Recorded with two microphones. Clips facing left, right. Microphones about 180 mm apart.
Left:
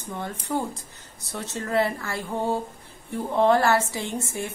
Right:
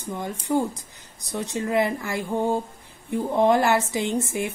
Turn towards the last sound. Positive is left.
turn(degrees=-20)  # may be behind; listen again after turning